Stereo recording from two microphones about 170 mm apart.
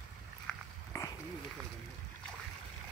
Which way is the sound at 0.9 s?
15° left (ahead or behind).